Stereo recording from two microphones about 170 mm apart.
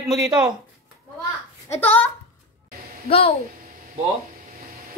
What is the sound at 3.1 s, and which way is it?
Speech, 35° left (ahead or behind).